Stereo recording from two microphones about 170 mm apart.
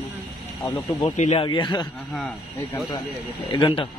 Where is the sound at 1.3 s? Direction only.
30° left (ahead or behind).